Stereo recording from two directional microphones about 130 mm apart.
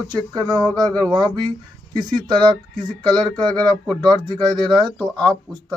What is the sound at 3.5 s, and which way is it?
Speech, 5° left (ahead or behind).